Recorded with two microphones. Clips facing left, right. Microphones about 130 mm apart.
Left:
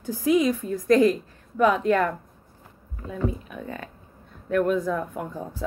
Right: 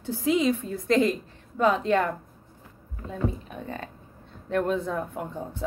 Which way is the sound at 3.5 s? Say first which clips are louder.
Left 1 dB; 30° right (ahead or behind).